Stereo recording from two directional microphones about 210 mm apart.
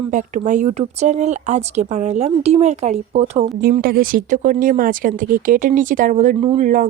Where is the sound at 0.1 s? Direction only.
35° right (ahead or behind).